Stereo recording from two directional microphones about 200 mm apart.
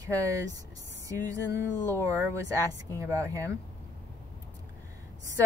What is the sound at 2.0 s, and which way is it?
Speech, 15° right (ahead or behind).